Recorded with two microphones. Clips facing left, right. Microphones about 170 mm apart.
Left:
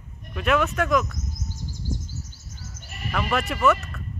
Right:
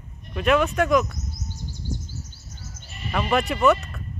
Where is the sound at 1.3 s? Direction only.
90° left.